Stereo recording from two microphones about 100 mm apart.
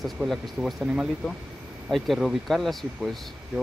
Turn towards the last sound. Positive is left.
turn(degrees=0)  # may be behind; listen again after turning